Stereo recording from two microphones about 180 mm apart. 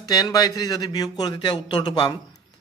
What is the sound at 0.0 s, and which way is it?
Speech, 20° left (ahead or behind).